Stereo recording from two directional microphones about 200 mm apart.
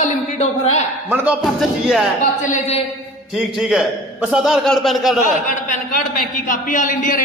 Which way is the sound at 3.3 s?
5° right (ahead or behind).